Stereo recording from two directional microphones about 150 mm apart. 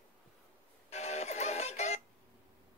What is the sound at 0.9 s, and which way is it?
Music, 45° left (ahead or behind).